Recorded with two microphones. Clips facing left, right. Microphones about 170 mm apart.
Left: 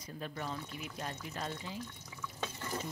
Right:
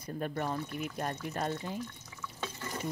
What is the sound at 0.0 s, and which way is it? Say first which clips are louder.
Speech: right 7 dB; 50° right (ahead or behind).